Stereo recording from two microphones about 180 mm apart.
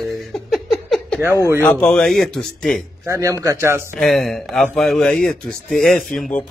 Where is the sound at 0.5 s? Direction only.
Centre (ahead or behind).